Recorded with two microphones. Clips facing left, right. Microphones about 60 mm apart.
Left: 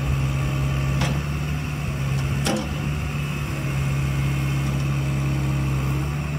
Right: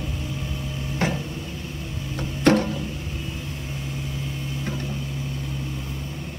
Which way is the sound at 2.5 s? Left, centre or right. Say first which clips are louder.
Right 8 dB; right.